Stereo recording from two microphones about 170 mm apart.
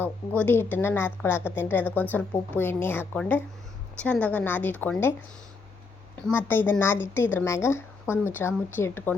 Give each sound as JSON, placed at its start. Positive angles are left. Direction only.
{"t": 0.0, "sound": "a woman's voice", "side_deg": 10}
{"t": 6.2, "sound": "a woman's voice", "side_deg": 10}